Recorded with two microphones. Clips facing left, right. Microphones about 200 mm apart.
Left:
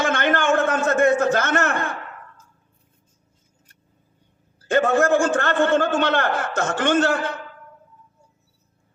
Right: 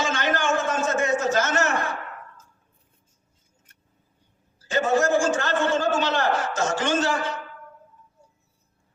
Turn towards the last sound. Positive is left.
turn(degrees=55)  # may be behind; listen again after turning